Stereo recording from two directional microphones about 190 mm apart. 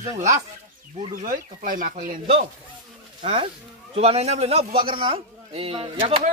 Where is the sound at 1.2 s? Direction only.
45° right (ahead or behind).